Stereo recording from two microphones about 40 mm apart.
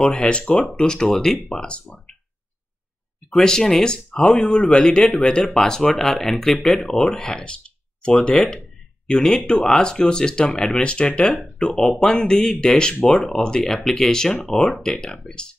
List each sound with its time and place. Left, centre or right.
0.0 s speech: left
0.8 s speech: centre
3.3 s speech: centre
5.5 s speech: centre
7.2 s a sound: left
8.1 s speech: left
9.0 s speech: centre
10.7 s speech: left
11.5 s speech: centre
12.3 s speech: left
13.1 s speech: centre